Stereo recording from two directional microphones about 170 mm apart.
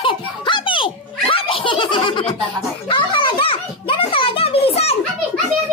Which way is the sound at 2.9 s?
30° left (ahead or behind).